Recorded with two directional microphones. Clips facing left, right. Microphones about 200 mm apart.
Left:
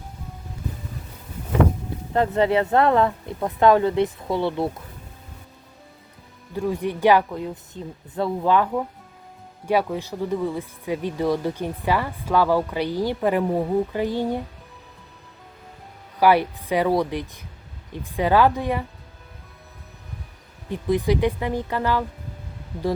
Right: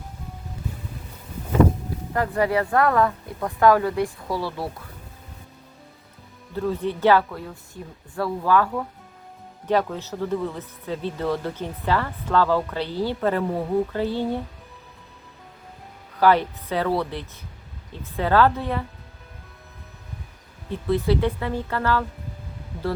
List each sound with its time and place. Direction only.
2.1 s speech: 25° left (ahead or behind)
6.5 s speech: 15° left (ahead or behind)
16.2 s speech: 10° left (ahead or behind)
20.7 s speech: 15° left (ahead or behind)